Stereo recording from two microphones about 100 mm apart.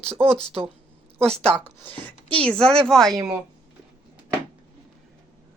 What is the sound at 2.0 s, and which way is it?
Speech, 15° left (ahead or behind).